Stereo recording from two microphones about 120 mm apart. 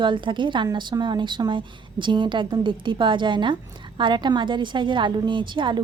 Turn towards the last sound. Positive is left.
turn(degrees=-40)  # may be behind; listen again after turning